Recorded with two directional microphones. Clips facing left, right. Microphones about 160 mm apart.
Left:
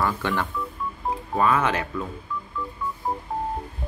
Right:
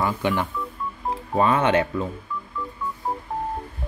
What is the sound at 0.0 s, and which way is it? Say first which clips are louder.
Speech: right 2 dB; 15° right (ahead or behind).